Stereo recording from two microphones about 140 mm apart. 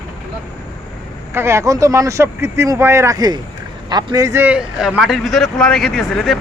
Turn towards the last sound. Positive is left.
turn(degrees=0)  # may be behind; listen again after turning